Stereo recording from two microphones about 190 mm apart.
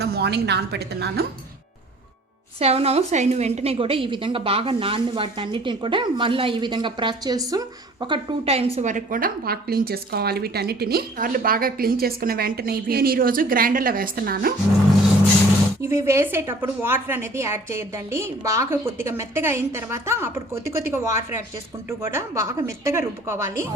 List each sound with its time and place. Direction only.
0.0 s a woman's voice: 60° right (ahead or behind)
2.6 s a woman's voice: 30° right (ahead or behind); by 14.5 s 50° right (ahead or behind)
15.8 s a woman's voice: 15° right (ahead or behind)